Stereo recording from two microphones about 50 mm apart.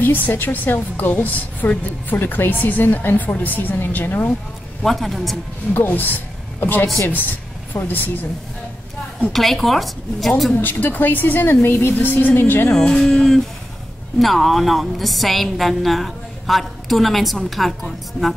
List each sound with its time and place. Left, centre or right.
0.0 s a woman's voice: left
4.8 s a woman's voice: centre
5.7 s a woman's voice: left
9.3 s a woman's voice: centre
10.5 s a woman's voice: left
12.7 s a woman's voice: centre